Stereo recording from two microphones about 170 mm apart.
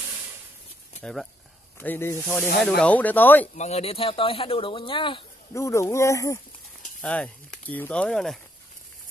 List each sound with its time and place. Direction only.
1.0 s speech: centre (ahead or behind)
3.5 s speech: 40° left (ahead or behind)
5.5 s speech: 15° left (ahead or behind)
7.0 s speech: 5° left (ahead or behind)